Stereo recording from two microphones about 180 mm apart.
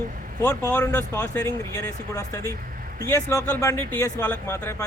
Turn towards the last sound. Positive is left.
turn(degrees=15)  # may be behind; listen again after turning